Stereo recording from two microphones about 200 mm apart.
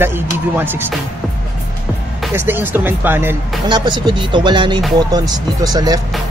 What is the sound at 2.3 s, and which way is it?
Speech, 10° right (ahead or behind).